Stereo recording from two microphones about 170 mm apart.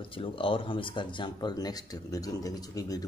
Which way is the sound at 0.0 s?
30° left (ahead or behind).